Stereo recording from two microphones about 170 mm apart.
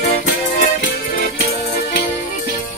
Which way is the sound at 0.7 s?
65° left (ahead or behind).